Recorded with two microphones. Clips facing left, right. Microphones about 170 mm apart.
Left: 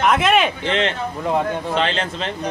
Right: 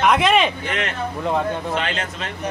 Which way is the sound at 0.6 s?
25° left (ahead or behind).